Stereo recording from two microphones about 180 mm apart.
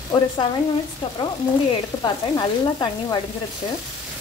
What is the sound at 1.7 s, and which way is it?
Sizzle, 25° left (ahead or behind).